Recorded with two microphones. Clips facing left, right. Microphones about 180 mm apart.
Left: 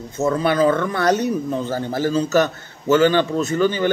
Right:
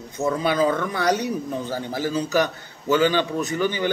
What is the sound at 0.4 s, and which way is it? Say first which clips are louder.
A man's voice: left 4 dB; 15° right (ahead or behind).